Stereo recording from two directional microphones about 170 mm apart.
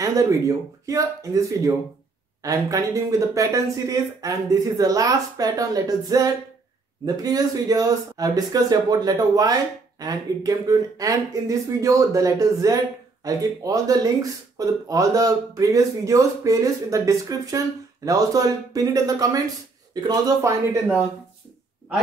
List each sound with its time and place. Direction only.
0.0 s speech: 20° right (ahead or behind)